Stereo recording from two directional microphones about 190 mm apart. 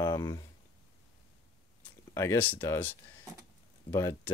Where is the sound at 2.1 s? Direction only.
15° left (ahead or behind).